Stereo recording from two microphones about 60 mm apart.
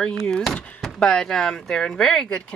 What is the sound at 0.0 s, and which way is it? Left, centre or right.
Speech, centre.